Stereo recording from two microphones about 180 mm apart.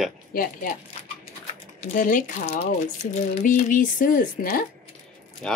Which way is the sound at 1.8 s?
50° left (ahead or behind).